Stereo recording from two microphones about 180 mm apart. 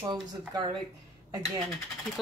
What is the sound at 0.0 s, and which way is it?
Speech, 25° right (ahead or behind).